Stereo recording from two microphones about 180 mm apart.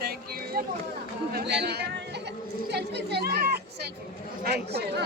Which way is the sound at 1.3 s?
65° right (ahead or behind).